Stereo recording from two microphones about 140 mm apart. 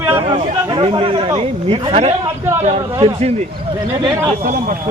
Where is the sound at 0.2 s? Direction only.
35° right (ahead or behind); by 2.8 s 55° right (ahead or behind).